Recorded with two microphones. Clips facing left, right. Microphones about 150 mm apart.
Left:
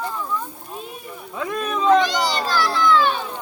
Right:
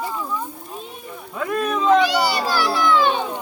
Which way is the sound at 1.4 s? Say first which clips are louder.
Right 2 dB; 5° right (ahead or behind).